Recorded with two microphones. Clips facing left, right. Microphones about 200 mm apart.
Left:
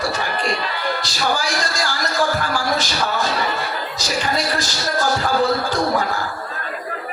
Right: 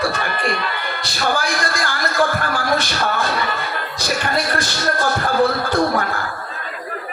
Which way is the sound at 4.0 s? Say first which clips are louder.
Right 1 dB; 55° right (ahead or behind).